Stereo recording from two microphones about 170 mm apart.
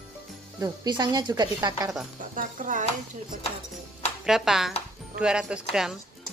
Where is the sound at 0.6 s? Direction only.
25° right (ahead or behind).